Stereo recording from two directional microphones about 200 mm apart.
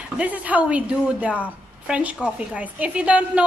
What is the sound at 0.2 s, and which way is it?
A woman's voice, 5° right (ahead or behind).